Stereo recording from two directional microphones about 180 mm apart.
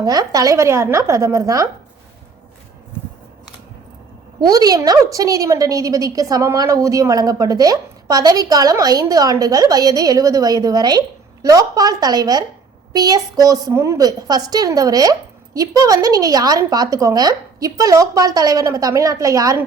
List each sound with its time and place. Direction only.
0.0 s speech: 20° right (ahead or behind)
4.4 s a woman's voice: 20° right (ahead or behind)